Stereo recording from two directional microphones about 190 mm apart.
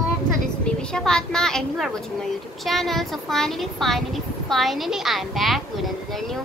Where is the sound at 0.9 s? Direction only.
5° left (ahead or behind).